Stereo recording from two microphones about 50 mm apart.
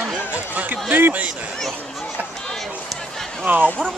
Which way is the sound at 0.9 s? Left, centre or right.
Right.